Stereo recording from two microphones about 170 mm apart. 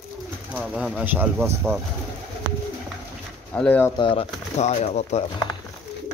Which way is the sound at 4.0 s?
35° left (ahead or behind).